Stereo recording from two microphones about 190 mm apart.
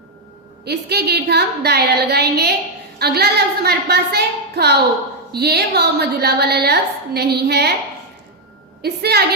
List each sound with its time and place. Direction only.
0.6 s a woman's voice: 60° right (ahead or behind)
8.8 s a woman's voice: 60° right (ahead or behind)